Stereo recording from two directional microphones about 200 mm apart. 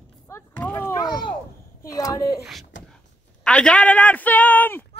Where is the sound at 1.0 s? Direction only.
20° left (ahead or behind).